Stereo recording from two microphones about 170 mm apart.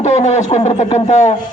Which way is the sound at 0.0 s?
40° left (ahead or behind).